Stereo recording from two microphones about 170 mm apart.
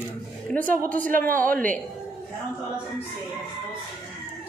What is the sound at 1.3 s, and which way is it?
Speech, 55° right (ahead or behind).